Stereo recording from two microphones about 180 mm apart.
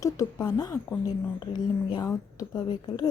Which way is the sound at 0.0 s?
20° left (ahead or behind).